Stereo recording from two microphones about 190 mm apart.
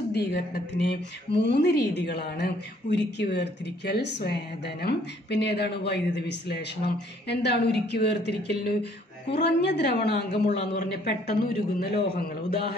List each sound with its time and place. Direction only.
0.1 s speech: 60° left (ahead or behind)
10.4 s a man's voice: 35° left (ahead or behind)
11.1 s speech: 55° left (ahead or behind)